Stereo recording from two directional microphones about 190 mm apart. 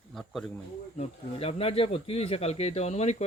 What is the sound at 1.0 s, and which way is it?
Speech, 30° left (ahead or behind).